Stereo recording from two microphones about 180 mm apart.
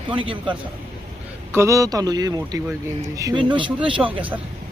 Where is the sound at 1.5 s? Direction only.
15° right (ahead or behind).